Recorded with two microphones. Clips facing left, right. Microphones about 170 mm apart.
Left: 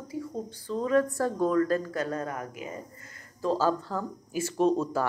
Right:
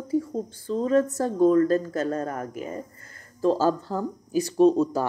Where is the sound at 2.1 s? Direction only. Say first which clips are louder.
Right 4 dB; 45° right (ahead or behind).